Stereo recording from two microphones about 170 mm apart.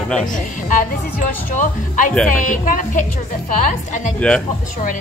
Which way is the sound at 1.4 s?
50° left (ahead or behind).